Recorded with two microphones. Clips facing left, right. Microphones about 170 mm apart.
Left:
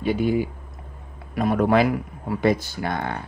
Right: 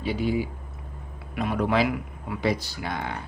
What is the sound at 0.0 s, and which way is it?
A man's voice, 50° left (ahead or behind).